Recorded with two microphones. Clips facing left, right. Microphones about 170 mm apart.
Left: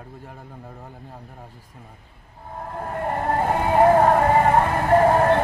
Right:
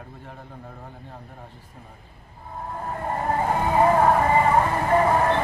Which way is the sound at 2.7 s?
65° left (ahead or behind).